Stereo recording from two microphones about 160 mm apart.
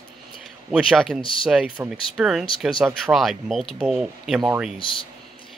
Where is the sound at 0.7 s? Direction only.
5° right (ahead or behind).